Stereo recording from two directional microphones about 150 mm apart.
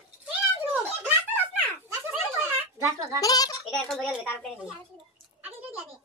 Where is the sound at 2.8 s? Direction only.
20° right (ahead or behind).